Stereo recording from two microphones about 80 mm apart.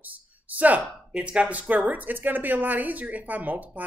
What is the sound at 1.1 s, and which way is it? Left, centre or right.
Speech, centre.